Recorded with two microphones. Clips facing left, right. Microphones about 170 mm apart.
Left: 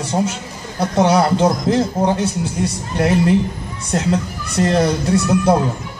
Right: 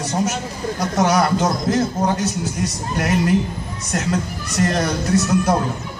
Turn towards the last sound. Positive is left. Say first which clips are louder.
# left 2 dB
turn(degrees=30)  # may be behind; listen again after turning